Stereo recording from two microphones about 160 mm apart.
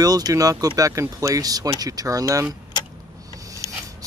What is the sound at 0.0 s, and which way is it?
Speech, 25° right (ahead or behind).